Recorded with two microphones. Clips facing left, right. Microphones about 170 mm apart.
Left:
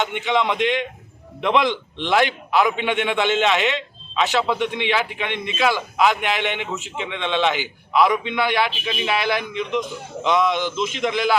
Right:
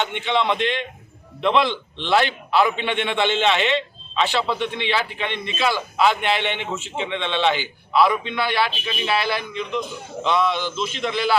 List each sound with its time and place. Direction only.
0.0 s a man's voice: 5° left (ahead or behind)